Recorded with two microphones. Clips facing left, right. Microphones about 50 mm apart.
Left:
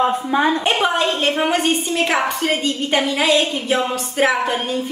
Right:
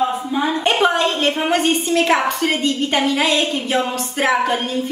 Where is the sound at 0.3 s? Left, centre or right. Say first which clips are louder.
Left 6 dB; left.